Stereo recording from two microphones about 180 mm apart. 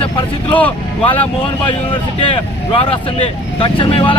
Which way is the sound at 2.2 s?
30° left (ahead or behind).